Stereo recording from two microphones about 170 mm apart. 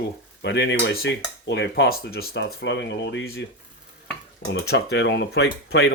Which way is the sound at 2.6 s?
90° left.